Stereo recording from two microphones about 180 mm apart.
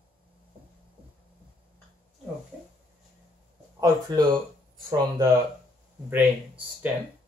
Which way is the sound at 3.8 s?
20° right (ahead or behind).